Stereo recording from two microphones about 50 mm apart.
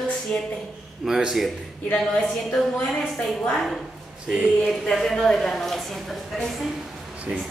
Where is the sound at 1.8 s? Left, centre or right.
Centre.